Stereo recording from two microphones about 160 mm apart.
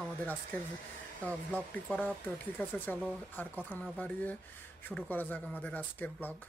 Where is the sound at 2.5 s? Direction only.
10° left (ahead or behind).